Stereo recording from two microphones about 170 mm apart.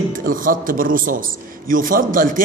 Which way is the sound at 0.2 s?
55° right (ahead or behind).